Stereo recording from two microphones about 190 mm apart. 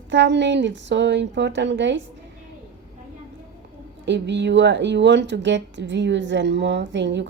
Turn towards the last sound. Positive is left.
turn(degrees=-65)  # may be behind; listen again after turning